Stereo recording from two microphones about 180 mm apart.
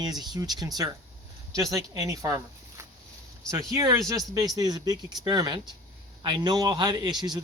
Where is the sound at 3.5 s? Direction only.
20° right (ahead or behind).